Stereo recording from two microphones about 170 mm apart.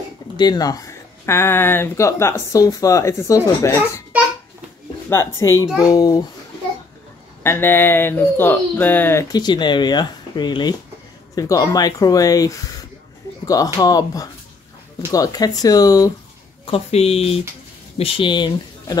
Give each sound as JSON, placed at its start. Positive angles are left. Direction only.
{"t": 0.4, "sound": "speech", "side_deg": 25}
{"t": 5.1, "sound": "speech", "side_deg": 15}
{"t": 7.4, "sound": "speech", "side_deg": 15}
{"t": 16.7, "sound": "speech", "side_deg": 35}